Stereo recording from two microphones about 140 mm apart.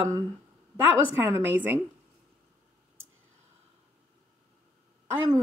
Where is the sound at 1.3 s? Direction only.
15° right (ahead or behind).